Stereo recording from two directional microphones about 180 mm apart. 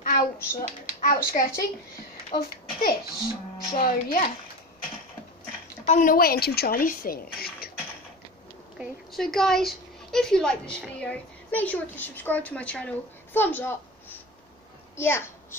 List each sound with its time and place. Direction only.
0.0 s hands: 50° left (ahead or behind)
1.0 s speech: 55° left (ahead or behind)
5.9 s speech: 50° left (ahead or behind)
8.7 s a woman's voice: centre (ahead or behind); by 15.3 s 15° left (ahead or behind)